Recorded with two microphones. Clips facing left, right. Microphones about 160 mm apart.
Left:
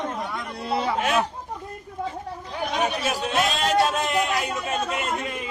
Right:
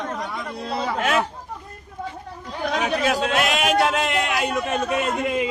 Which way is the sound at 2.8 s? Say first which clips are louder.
Right 4 dB; 90° right.